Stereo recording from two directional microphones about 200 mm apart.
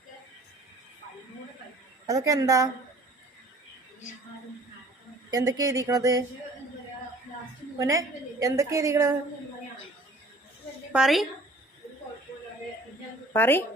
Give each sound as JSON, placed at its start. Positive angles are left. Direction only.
{"t": 2.0, "sound": "a woman's voice", "side_deg": -15}
{"t": 5.3, "sound": "a woman's voice", "side_deg": -15}
{"t": 7.8, "sound": "a woman's voice", "side_deg": -15}
{"t": 10.9, "sound": "a woman's voice", "side_deg": 0}
{"t": 13.3, "sound": "a woman's voice", "side_deg": 10}